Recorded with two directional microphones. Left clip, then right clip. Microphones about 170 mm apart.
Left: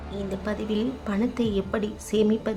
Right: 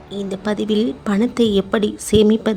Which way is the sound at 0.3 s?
40° right (ahead or behind).